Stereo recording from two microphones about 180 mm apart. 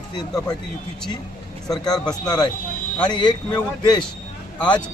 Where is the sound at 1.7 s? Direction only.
20° left (ahead or behind).